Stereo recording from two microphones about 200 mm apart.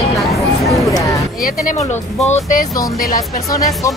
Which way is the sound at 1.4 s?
40° left (ahead or behind).